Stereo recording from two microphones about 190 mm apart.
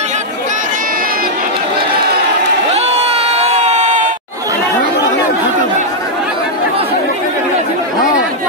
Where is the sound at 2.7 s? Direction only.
35° right (ahead or behind).